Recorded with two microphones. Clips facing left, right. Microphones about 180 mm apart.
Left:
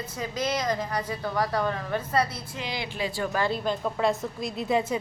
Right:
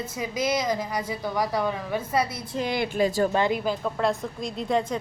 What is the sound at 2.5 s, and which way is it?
Speech, 50° right (ahead or behind).